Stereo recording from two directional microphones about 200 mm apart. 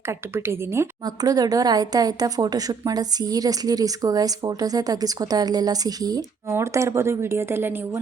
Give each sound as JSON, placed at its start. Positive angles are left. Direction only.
{"t": 0.1, "sound": "a woman's voice", "side_deg": -15}